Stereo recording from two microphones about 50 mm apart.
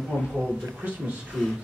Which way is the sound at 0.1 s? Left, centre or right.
Centre.